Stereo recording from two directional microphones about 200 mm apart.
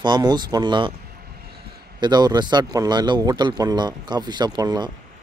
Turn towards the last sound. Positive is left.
turn(degrees=-20)  # may be behind; listen again after turning